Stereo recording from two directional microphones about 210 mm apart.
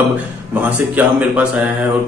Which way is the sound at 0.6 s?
5° right (ahead or behind).